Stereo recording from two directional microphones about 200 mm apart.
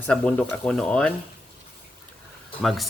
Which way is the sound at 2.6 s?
Centre (ahead or behind).